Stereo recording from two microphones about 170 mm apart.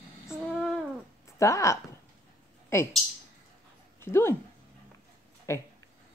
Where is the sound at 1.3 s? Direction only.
20° left (ahead or behind).